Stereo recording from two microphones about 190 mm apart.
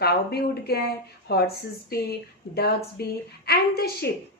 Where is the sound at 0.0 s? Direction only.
55° left (ahead or behind).